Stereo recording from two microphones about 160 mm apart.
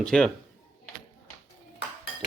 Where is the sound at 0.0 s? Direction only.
5° left (ahead or behind).